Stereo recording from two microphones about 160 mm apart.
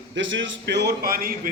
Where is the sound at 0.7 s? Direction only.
90° right; by 1.3 s 65° right (ahead or behind).